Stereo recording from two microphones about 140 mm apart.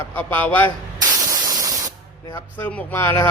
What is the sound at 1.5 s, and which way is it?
Spray, 25° right (ahead or behind).